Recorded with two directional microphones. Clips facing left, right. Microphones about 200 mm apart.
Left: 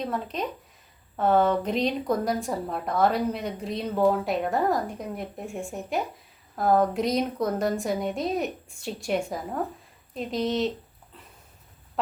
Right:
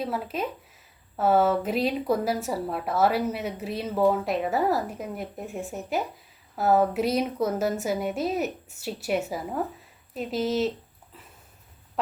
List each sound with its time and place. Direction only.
0.0 s speech: 5° right (ahead or behind)